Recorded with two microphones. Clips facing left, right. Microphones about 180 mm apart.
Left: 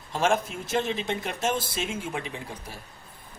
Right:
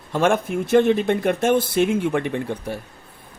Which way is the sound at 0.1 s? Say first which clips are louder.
Right 6 dB; 60° right (ahead or behind).